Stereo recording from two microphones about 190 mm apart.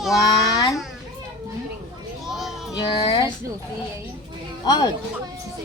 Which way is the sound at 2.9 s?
25° left (ahead or behind).